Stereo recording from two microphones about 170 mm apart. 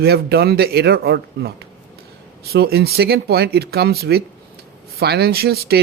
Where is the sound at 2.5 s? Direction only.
70° right (ahead or behind).